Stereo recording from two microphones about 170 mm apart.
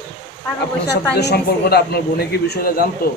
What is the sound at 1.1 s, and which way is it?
Speech, 75° left (ahead or behind).